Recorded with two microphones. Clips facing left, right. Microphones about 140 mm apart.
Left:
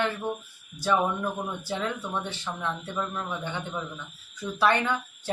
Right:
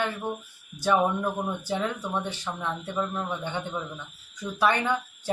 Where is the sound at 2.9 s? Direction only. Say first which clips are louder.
Right 2 dB; 20° right (ahead or behind).